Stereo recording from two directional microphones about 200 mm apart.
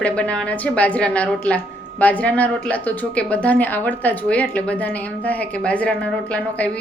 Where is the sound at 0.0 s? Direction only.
5° left (ahead or behind).